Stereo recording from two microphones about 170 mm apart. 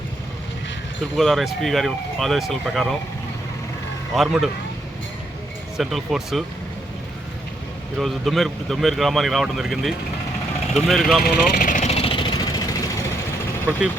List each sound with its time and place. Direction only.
1.1 s speech: centre (ahead or behind)
4.1 s speech: centre (ahead or behind)
5.7 s speech: centre (ahead or behind)
7.9 s speech: centre (ahead or behind)
11.5 s vehicle: 50° left (ahead or behind); by 13.5 s 20° left (ahead or behind)